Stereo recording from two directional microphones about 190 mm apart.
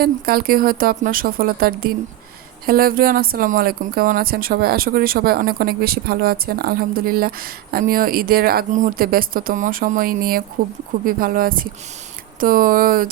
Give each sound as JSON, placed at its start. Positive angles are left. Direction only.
{"t": 0.0, "sound": "speech", "side_deg": -50}